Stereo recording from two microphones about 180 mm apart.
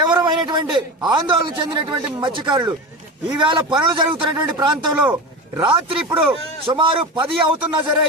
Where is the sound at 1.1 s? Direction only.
25° right (ahead or behind).